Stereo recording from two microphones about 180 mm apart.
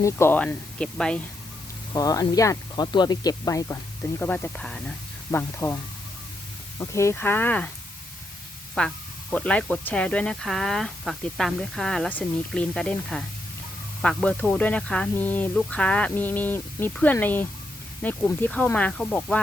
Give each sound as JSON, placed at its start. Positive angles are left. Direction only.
{"t": 0.0, "sound": "speech", "side_deg": 15}
{"t": 1.9, "sound": "speech", "side_deg": 20}
{"t": 8.8, "sound": "speech", "side_deg": 5}